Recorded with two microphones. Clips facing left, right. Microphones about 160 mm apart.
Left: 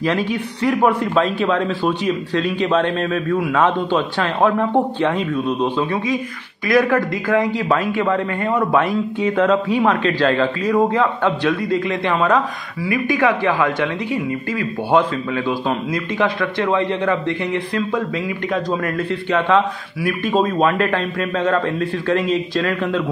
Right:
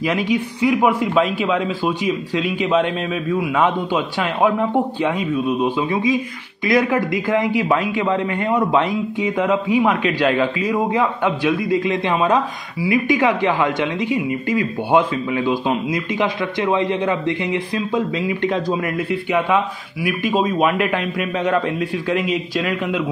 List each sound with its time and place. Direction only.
0.0 s a man's voice: 15° right (ahead or behind)
6.7 s a man's voice: 20° right (ahead or behind)
19.3 s a man's voice: 10° right (ahead or behind)